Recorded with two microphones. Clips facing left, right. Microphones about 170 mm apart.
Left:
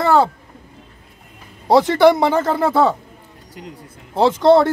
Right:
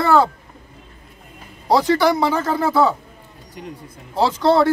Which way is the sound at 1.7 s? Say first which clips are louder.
Left 4 dB; 25° left (ahead or behind).